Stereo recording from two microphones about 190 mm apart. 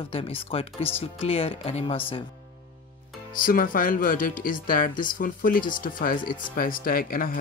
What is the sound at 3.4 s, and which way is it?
Speech, 45° left (ahead or behind).